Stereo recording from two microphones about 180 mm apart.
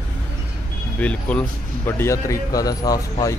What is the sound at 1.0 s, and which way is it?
Speech, 5° left (ahead or behind).